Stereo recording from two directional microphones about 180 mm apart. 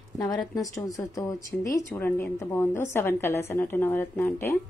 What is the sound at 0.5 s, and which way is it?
A woman's voice, 20° left (ahead or behind).